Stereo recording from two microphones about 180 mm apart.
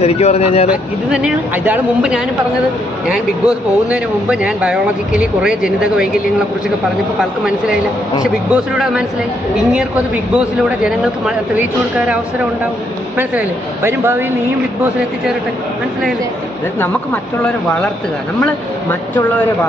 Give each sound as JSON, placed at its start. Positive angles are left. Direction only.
{"t": 0.0, "sound": "speech", "side_deg": 35}
{"t": 0.7, "sound": "speech", "side_deg": -5}
{"t": 8.2, "sound": "speech", "side_deg": -5}
{"t": 10.3, "sound": "speech", "side_deg": -5}
{"t": 13.2, "sound": "speech", "side_deg": -10}
{"t": 18.4, "sound": "speech", "side_deg": 10}